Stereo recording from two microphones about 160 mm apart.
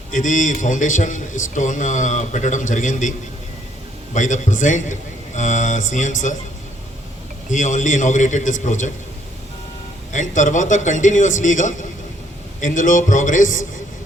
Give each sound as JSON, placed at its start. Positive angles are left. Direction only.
{"t": 0.1, "sound": "a man's voice", "side_deg": 50}
{"t": 7.5, "sound": "a man's voice", "side_deg": 50}
{"t": 10.1, "sound": "a man's voice", "side_deg": 50}